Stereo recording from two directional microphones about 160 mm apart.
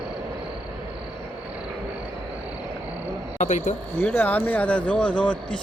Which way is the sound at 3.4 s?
50° left (ahead or behind).